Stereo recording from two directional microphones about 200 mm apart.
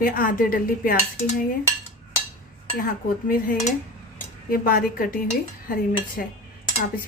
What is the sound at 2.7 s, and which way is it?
Speech, 45° left (ahead or behind).